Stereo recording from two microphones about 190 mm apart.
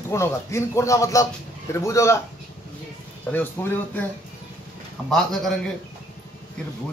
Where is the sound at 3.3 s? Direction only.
10° left (ahead or behind).